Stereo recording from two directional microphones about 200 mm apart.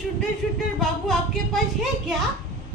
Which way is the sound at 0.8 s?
Centre (ahead or behind).